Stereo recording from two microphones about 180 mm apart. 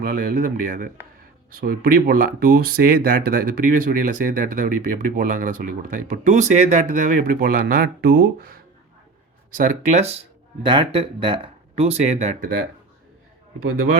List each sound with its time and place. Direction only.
0.0 s speech: 50° right (ahead or behind)
9.6 s speech: 40° right (ahead or behind)